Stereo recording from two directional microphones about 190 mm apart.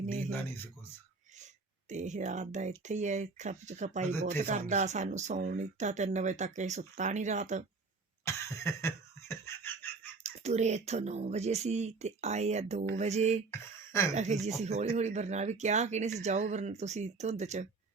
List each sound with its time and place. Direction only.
0.0 s a sound: 45° right (ahead or behind)
0.3 s speech: 10° left (ahead or behind)
1.9 s speech: 40° right (ahead or behind)
8.2 s cough: 15° left (ahead or behind)
10.2 s speech: 35° right (ahead or behind)
13.5 s speech: 15° left (ahead or behind)
14.6 s speech: 35° right (ahead or behind)